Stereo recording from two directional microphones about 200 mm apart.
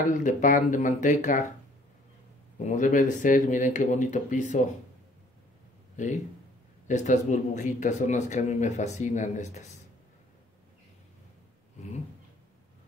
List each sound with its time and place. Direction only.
0.1 s speech: 40° left (ahead or behind)
2.6 s speech: 40° left (ahead or behind)
6.9 s speech: 40° left (ahead or behind)